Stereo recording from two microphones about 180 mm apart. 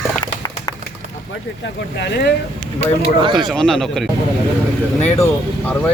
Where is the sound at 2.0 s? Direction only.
70° left (ahead or behind).